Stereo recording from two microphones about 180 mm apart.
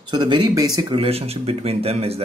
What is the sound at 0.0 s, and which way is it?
Speech, 25° right (ahead or behind).